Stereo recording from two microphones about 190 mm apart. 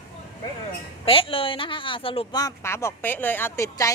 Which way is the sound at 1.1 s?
30° left (ahead or behind).